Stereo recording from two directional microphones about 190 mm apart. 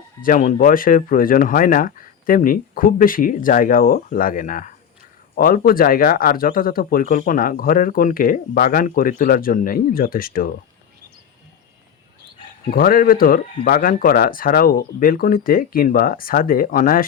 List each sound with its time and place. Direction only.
0.2 s speech: 45° left (ahead or behind)
12.7 s speech: 50° left (ahead or behind)